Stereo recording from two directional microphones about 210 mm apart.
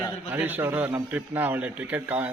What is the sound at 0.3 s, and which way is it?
A man's voice, 10° right (ahead or behind).